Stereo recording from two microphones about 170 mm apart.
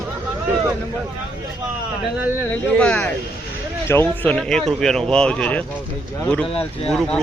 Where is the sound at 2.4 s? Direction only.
10° left (ahead or behind).